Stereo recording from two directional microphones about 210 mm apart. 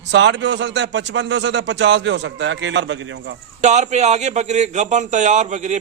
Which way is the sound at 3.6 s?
35° right (ahead or behind).